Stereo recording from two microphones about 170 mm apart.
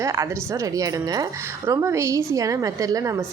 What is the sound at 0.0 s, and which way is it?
A woman's voice, 20° right (ahead or behind).